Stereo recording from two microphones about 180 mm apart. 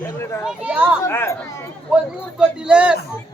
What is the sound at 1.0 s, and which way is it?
Speech, 15° left (ahead or behind).